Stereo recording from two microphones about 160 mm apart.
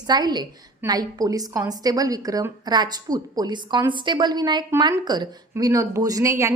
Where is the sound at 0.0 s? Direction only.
25° right (ahead or behind).